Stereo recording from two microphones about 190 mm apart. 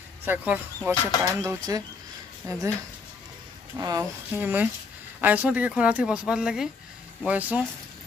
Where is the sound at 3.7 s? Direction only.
20° right (ahead or behind).